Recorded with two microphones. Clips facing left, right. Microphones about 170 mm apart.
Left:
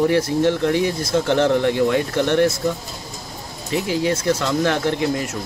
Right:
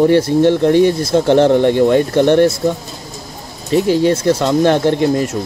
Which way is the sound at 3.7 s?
35° right (ahead or behind).